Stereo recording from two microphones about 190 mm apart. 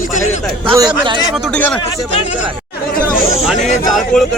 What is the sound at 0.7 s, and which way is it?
Speech, 20° right (ahead or behind).